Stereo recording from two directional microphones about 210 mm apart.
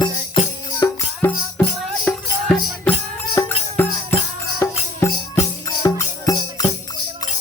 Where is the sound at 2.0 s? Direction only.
5° left (ahead or behind).